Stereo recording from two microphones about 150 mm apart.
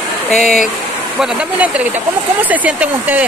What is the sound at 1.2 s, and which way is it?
Speech, 10° right (ahead or behind).